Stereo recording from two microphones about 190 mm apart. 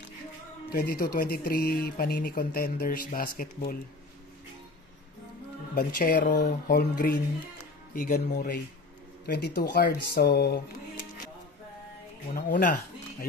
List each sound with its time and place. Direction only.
0.7 s speech: 50° left (ahead or behind)
5.8 s speech: 50° left (ahead or behind)
6.4 s speech: 55° left (ahead or behind)
12.4 s speech: 50° left (ahead or behind)